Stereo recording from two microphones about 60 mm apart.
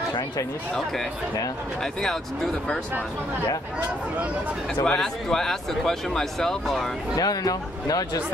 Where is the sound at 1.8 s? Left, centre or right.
Centre.